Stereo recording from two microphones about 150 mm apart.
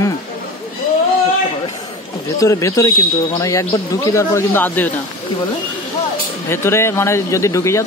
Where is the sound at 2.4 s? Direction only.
20° left (ahead or behind).